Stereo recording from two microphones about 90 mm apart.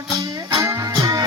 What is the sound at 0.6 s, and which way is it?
Music, 45° right (ahead or behind).